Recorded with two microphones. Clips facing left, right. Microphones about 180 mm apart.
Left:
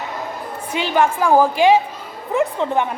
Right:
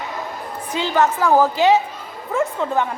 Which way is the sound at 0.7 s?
15° left (ahead or behind).